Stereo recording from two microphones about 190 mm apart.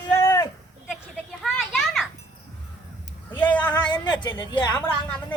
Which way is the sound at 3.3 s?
10° left (ahead or behind).